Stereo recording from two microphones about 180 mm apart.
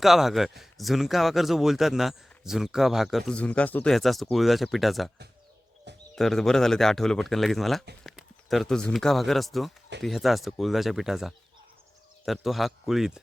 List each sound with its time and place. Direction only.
0.0 s speech: centre (ahead or behind)
6.1 s speech: centre (ahead or behind)